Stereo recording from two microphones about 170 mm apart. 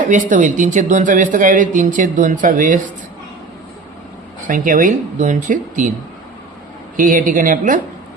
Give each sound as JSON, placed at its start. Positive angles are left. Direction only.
{"t": 0.0, "sound": "speech", "side_deg": -50}
{"t": 4.4, "sound": "speech", "side_deg": -50}
{"t": 6.9, "sound": "speech", "side_deg": -50}